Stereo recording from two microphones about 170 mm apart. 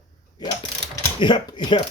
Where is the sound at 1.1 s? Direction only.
30° left (ahead or behind).